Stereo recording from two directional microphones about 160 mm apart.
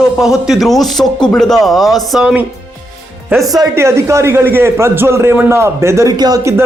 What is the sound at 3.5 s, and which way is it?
A man's voice, 20° right (ahead or behind).